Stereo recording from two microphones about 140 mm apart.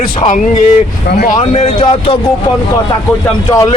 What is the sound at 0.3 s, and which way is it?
Speech, 65° left (ahead or behind).